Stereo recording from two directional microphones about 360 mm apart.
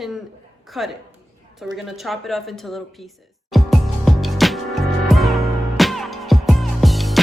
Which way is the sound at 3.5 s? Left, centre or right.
Centre.